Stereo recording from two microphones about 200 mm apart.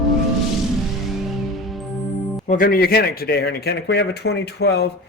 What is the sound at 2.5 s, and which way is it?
Speech, 45° left (ahead or behind).